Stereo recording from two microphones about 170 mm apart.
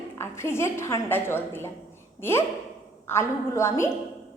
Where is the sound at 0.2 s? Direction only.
15° left (ahead or behind).